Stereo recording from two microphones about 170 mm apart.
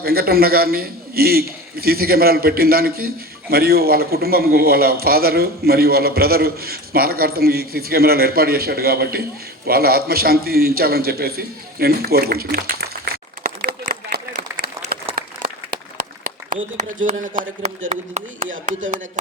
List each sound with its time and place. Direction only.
0.0 s a man's voice: 65° right (ahead or behind)
9.6 s a sound: 65° right (ahead or behind)
15.1 s applause: 60° right (ahead or behind)
16.7 s speech: 45° right (ahead or behind)